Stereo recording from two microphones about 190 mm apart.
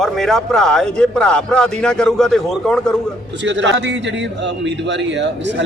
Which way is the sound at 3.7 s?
65° right (ahead or behind).